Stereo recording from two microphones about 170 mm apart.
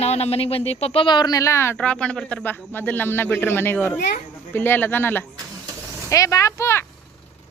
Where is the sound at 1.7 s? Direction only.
5° left (ahead or behind).